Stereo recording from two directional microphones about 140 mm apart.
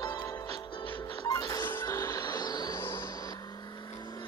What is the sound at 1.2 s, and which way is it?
Music, 25° left (ahead or behind).